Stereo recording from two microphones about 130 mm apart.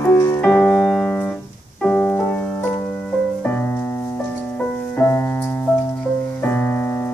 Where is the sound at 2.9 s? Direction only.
5° left (ahead or behind).